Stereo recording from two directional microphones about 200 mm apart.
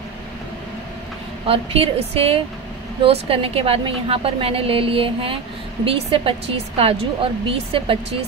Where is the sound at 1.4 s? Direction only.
30° right (ahead or behind).